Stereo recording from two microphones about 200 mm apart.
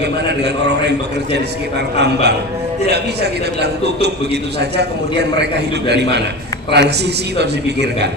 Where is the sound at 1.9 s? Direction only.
55° right (ahead or behind).